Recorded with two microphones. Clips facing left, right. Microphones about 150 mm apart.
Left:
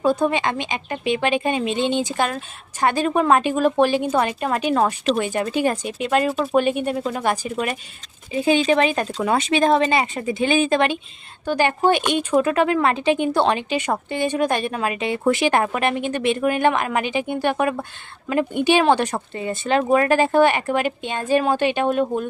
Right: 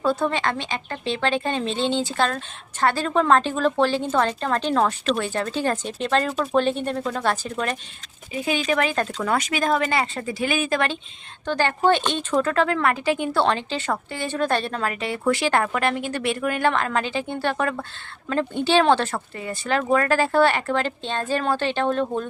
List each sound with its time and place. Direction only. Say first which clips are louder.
0.0 s speech: left 3 dB; 15° left (ahead or behind)
8.3 s speech: left 6 dB; 30° left (ahead or behind); by 22.3 s 15° left (ahead or behind)